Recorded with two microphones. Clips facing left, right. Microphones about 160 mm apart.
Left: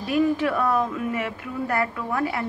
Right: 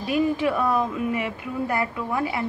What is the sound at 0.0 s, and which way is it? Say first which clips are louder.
Speech: left 1 dB; 10° right (ahead or behind).